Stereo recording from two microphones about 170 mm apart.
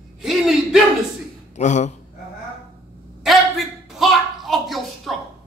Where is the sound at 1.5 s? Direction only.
45° left (ahead or behind).